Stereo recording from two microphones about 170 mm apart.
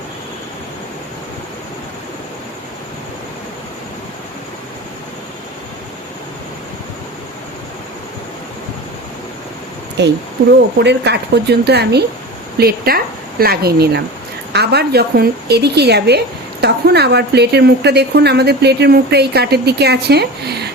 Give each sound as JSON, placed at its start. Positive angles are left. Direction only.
{"t": 10.0, "sound": "speech", "side_deg": -90}
{"t": 10.8, "sound": "a woman's voice", "side_deg": -75}
{"t": 12.5, "sound": "a woman's voice", "side_deg": -65}